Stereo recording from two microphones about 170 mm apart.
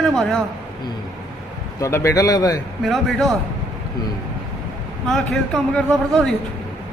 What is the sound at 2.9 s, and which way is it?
Speech, centre (ahead or behind).